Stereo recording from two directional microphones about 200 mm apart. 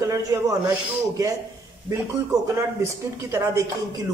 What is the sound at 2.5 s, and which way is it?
Speech, 15° right (ahead or behind).